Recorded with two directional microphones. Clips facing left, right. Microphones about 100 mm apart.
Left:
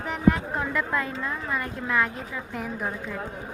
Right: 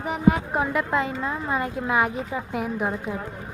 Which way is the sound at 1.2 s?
25° right (ahead or behind).